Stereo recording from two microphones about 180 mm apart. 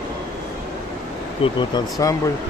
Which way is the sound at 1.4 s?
25° left (ahead or behind).